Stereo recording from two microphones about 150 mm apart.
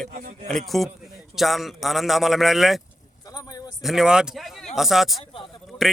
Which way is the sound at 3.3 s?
25° left (ahead or behind).